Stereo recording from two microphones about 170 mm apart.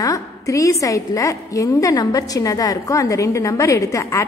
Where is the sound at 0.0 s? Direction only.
20° left (ahead or behind).